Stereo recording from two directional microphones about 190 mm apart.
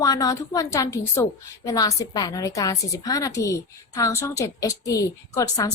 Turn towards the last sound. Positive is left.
turn(degrees=20)  # may be behind; listen again after turning